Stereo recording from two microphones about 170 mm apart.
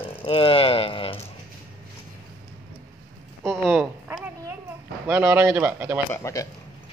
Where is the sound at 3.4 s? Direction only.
5° right (ahead or behind).